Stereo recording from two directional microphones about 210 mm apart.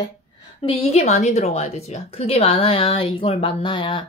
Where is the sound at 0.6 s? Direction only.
30° left (ahead or behind).